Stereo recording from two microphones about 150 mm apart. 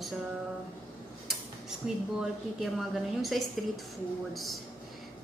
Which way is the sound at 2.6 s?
Centre (ahead or behind).